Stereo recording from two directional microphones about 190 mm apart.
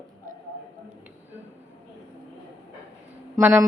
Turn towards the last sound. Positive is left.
turn(degrees=-15)  # may be behind; listen again after turning